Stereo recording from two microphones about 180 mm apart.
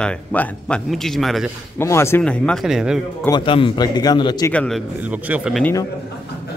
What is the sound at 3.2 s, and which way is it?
A man's voice, 25° left (ahead or behind).